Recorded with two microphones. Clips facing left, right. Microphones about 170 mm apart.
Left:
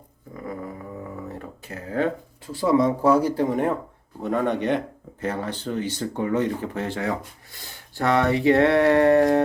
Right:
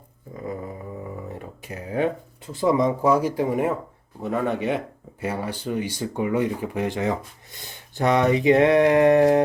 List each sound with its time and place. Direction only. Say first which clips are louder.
1.3 s speech: even; 15° right (ahead or behind)